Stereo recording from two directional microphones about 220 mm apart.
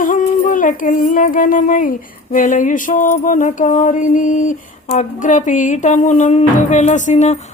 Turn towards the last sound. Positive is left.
turn(degrees=30)  # may be behind; listen again after turning